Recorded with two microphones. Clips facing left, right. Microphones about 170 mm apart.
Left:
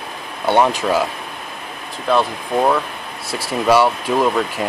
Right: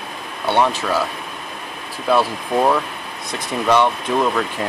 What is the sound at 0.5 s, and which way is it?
Speech, 15° left (ahead or behind).